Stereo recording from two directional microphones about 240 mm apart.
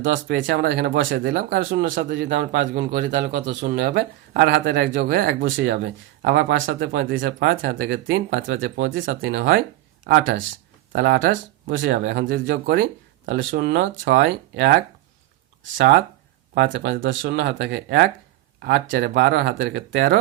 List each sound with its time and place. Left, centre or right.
0.1 s speech: right
3.1 s speech: right
7.8 s speech: right
15.8 s speech: right